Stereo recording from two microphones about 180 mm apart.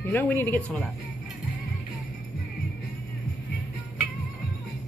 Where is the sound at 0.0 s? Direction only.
10° left (ahead or behind).